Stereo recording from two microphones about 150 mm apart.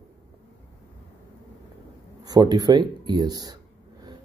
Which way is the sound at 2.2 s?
25° right (ahead or behind).